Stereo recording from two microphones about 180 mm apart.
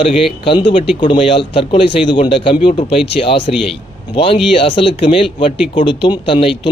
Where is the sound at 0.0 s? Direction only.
30° left (ahead or behind).